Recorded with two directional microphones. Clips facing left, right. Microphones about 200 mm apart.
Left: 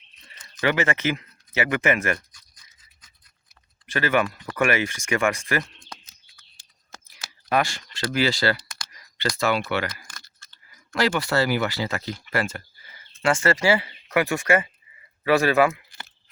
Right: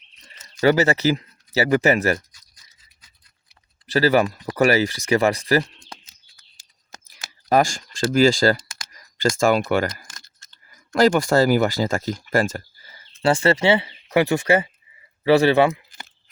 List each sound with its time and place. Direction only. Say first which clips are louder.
0.6 s speech: right 6 dB; 35° right (ahead or behind)
3.8 s speech: right 5 dB; 35° right (ahead or behind)
7.1 s a sound: right 5 dB; 40° right (ahead or behind)
8.1 s speech: right 7 dB; 45° right (ahead or behind); by 16.0 s 30° right (ahead or behind)